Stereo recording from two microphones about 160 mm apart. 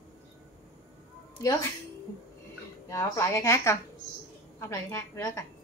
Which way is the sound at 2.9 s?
20° left (ahead or behind).